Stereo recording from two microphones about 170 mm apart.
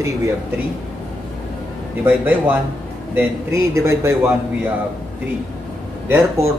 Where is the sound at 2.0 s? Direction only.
10° right (ahead or behind).